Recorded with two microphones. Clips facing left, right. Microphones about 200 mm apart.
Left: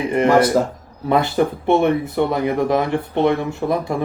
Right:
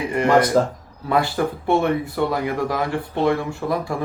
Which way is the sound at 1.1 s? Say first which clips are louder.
Left 3 dB; 20° left (ahead or behind).